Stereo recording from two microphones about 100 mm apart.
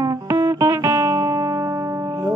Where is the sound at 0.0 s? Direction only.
40° right (ahead or behind).